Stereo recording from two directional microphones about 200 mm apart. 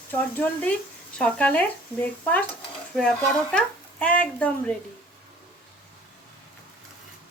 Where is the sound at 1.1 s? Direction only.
5° left (ahead or behind).